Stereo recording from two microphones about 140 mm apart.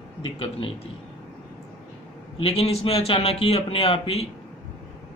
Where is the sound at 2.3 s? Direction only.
45° left (ahead or behind).